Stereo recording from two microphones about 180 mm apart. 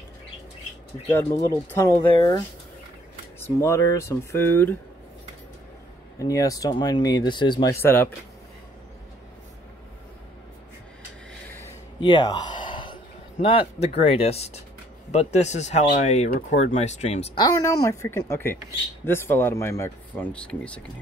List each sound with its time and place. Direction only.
1.1 s speech: 15° left (ahead or behind)
3.3 s speech: 15° left (ahead or behind)
6.1 s speech: 20° left (ahead or behind)
7.8 s speech: 10° left (ahead or behind)
12.0 s a sound: 25° left (ahead or behind)
14.2 s speech: 35° left (ahead or behind)
17.4 s speech: 20° left (ahead or behind)